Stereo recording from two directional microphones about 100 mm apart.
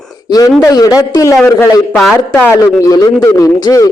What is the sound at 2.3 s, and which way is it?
A man's voice, 35° left (ahead or behind).